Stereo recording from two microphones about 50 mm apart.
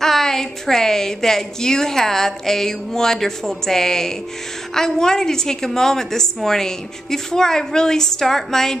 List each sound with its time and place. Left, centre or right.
0.0 s a woman's voice: centre